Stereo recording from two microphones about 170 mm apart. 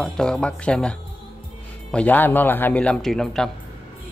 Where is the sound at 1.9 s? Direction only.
10° left (ahead or behind).